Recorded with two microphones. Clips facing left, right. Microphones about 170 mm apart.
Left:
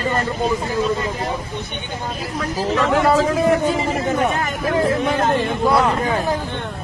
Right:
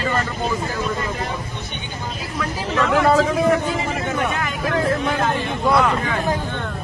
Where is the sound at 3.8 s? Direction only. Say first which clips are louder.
Left 4 dB; 35° left (ahead or behind).